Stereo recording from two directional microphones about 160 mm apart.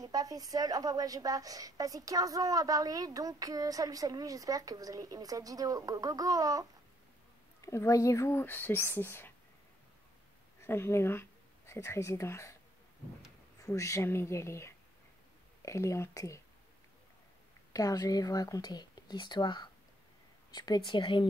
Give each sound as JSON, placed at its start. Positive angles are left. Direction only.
{"t": 0.0, "sound": "a woman's voice", "side_deg": -25}
{"t": 7.6, "sound": "speech", "side_deg": 20}
{"t": 10.6, "sound": "speech", "side_deg": 15}
{"t": 13.6, "sound": "speech", "side_deg": 20}
{"t": 17.7, "sound": "speech", "side_deg": 20}